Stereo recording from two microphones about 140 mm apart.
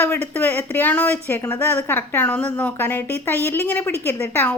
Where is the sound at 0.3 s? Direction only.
15° left (ahead or behind).